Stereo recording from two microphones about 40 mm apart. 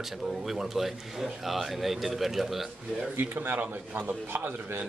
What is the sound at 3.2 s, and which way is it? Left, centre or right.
A man's voice, right.